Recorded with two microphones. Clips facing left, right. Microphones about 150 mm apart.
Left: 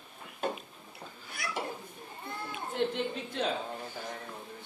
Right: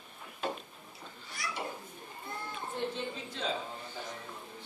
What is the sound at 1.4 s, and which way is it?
Children playing, 55° left (ahead or behind).